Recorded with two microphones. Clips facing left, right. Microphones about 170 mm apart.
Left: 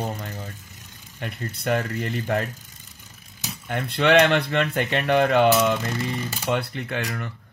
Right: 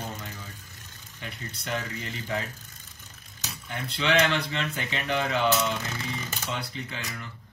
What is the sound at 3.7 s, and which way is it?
Speech, 55° left (ahead or behind).